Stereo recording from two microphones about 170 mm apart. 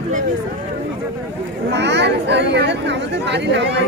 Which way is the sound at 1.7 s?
90° right.